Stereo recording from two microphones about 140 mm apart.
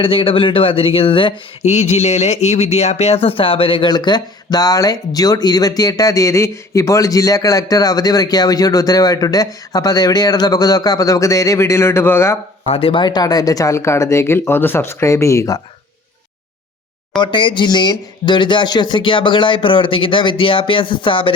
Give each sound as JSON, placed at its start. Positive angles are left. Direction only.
{"t": 0.0, "sound": "speech", "side_deg": 40}
{"t": 1.6, "sound": "speech", "side_deg": 55}
{"t": 12.6, "sound": "speech", "side_deg": 45}
{"t": 17.2, "sound": "speech", "side_deg": 35}